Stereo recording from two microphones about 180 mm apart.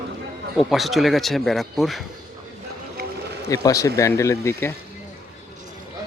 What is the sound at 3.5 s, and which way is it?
Speech, 20° left (ahead or behind).